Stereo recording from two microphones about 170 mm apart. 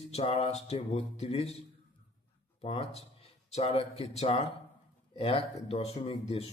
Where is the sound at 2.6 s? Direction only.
35° left (ahead or behind).